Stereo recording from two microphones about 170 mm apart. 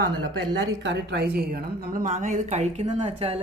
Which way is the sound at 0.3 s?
90° right.